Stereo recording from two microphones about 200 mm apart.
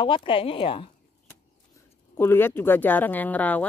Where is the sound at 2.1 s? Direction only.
10° left (ahead or behind).